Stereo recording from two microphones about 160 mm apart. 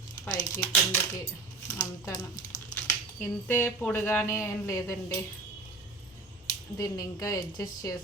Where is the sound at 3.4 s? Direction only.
10° left (ahead or behind).